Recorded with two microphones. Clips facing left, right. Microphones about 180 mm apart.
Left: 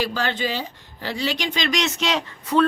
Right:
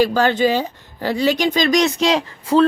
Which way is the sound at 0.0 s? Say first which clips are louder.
Right 9 dB; 45° right (ahead or behind).